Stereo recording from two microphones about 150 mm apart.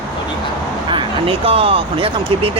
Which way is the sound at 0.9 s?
35° right (ahead or behind).